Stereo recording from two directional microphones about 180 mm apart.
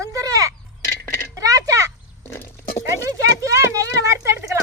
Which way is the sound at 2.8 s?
15° right (ahead or behind).